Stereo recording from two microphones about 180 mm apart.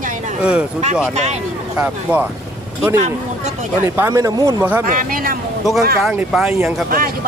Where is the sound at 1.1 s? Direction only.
40° right (ahead or behind).